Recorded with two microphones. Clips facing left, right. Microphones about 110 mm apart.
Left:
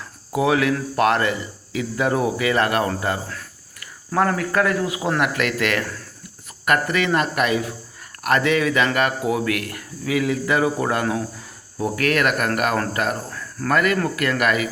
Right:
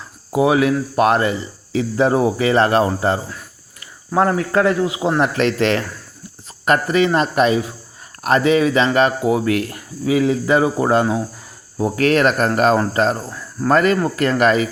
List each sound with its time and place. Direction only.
0.3 s speech: 20° right (ahead or behind)